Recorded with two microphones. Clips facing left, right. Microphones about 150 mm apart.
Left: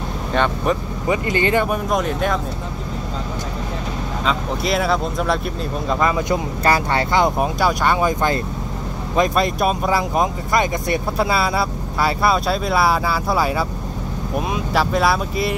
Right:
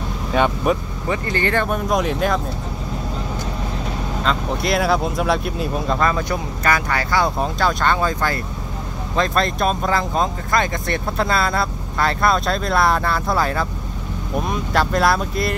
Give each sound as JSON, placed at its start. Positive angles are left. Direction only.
{"t": 0.3, "sound": "speech", "side_deg": -5}
{"t": 1.0, "sound": "speech", "side_deg": 15}
{"t": 1.9, "sound": "speech", "side_deg": 0}
{"t": 4.2, "sound": "speech", "side_deg": 0}
{"t": 5.9, "sound": "speech", "side_deg": 15}